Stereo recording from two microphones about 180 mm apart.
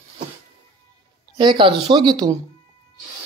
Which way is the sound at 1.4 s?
25° right (ahead or behind).